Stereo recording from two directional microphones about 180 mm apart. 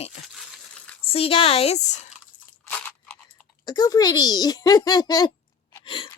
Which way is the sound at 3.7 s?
20° left (ahead or behind).